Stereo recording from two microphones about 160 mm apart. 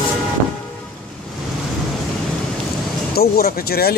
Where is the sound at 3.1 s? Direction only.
75° left (ahead or behind).